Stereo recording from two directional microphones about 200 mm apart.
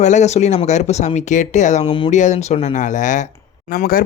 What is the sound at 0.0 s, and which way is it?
Speech, 35° left (ahead or behind).